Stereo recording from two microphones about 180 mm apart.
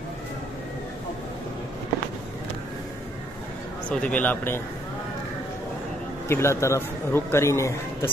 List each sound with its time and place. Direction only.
3.9 s a man's voice: 5° left (ahead or behind)
6.2 s a man's voice: 15° left (ahead or behind)